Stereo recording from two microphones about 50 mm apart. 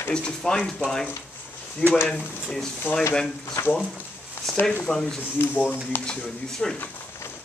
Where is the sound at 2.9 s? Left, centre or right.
Left.